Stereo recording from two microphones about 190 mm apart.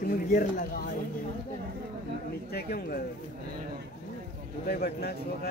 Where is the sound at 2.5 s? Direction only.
55° left (ahead or behind).